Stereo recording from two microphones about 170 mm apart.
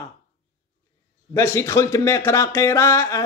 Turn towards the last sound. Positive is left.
turn(degrees=15)  # may be behind; listen again after turning